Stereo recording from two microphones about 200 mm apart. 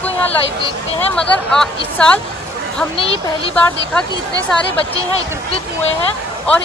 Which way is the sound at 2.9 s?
25° left (ahead or behind).